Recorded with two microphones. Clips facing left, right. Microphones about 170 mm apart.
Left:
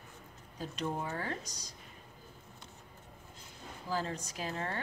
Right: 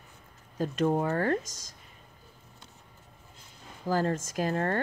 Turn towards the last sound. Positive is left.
turn(degrees=-55)  # may be behind; listen again after turning